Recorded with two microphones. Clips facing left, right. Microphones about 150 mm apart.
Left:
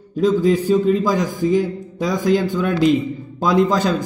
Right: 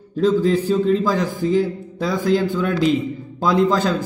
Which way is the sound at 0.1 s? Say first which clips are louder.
Left 1 dB; 15° left (ahead or behind).